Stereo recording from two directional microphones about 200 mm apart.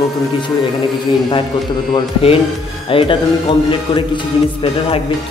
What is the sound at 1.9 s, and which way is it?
Speech, 30° left (ahead or behind).